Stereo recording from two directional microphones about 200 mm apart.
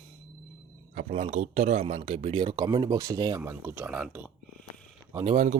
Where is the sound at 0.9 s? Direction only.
40° right (ahead or behind); by 4.3 s 5° right (ahead or behind).